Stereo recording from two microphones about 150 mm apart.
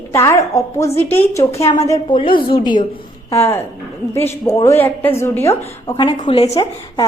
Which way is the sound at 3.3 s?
15° left (ahead or behind).